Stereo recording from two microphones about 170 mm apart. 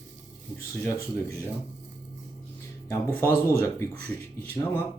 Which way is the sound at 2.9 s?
15° left (ahead or behind).